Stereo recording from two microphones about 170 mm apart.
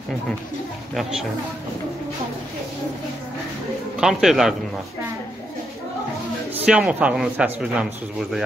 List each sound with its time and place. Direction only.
4.0 s a man's voice: centre (ahead or behind)
6.5 s a man's voice: 5° right (ahead or behind)